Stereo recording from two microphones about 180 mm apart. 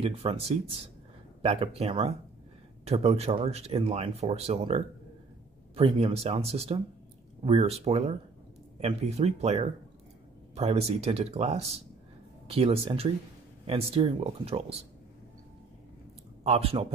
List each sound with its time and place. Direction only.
0.0 s speech: 30° right (ahead or behind)
16.4 s speech: 30° right (ahead or behind)